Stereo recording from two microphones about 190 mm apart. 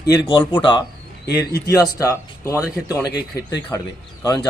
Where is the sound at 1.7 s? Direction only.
20° left (ahead or behind).